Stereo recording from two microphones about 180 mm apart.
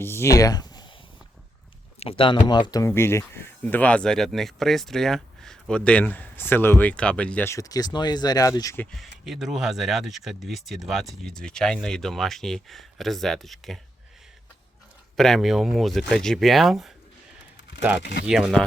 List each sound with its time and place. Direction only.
0.0 s speech: 15° left (ahead or behind)
2.0 s speech: 30° left (ahead or behind)
8.9 s speech: centre (ahead or behind)
15.1 s speech: centre (ahead or behind)
18.3 s speech: 5° right (ahead or behind)